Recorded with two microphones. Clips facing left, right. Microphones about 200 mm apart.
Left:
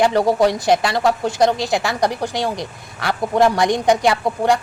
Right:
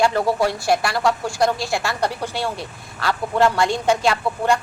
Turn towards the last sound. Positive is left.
turn(degrees=15)  # may be behind; listen again after turning